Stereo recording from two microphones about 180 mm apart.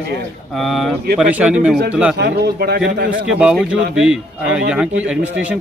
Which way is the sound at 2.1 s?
65° right (ahead or behind).